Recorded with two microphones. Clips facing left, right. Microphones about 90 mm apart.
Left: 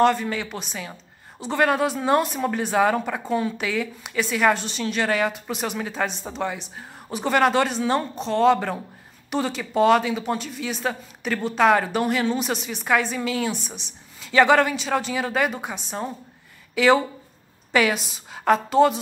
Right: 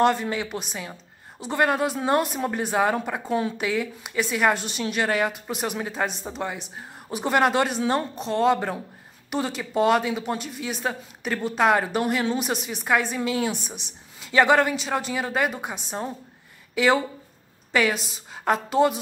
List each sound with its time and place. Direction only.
0.0 s speech: 15° right (ahead or behind)
3.3 s speech: 20° right (ahead or behind)
3.6 s a woman's voice: 5° right (ahead or behind)